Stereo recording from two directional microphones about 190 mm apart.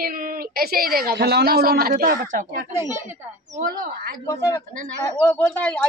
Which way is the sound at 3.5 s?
45° right (ahead or behind).